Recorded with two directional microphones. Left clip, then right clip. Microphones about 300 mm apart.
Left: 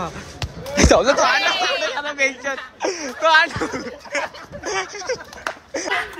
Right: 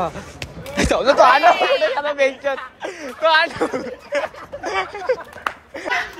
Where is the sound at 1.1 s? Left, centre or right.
Centre.